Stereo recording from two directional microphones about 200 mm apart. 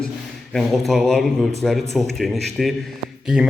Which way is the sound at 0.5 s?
Centre (ahead or behind).